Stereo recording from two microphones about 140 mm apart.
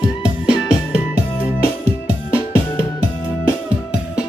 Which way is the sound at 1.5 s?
20° left (ahead or behind).